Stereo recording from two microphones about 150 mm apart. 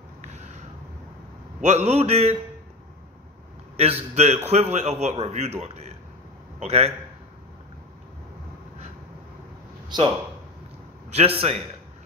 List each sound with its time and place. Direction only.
0.2 s a sound: 50° right (ahead or behind)
1.6 s a man's voice: 50° right (ahead or behind)
3.7 s a man's voice: 45° right (ahead or behind)
9.8 s a man's voice: 30° right (ahead or behind)
11.4 s a man's voice: 45° right (ahead or behind)